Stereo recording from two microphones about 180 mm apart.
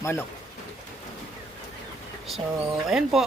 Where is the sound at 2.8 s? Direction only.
Centre (ahead or behind).